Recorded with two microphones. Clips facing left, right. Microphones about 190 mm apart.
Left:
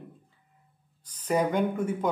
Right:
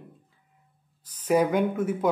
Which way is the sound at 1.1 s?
10° right (ahead or behind).